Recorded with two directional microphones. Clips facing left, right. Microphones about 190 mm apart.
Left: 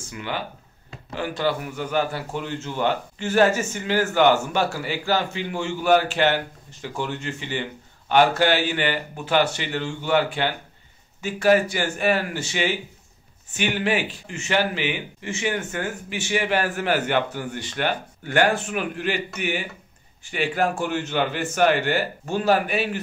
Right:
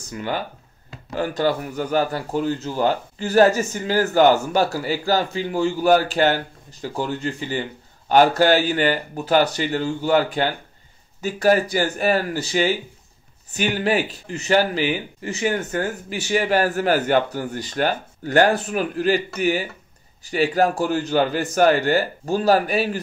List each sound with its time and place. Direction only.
0.1 s a man's voice: 40° right (ahead or behind)